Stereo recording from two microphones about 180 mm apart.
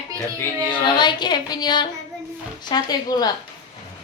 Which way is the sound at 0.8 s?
25° left (ahead or behind).